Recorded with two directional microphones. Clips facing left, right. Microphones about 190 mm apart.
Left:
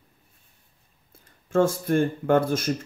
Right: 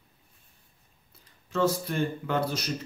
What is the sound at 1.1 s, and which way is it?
Speech, 50° left (ahead or behind).